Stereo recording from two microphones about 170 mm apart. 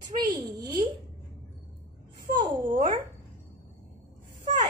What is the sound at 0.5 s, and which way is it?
Speech, 20° right (ahead or behind).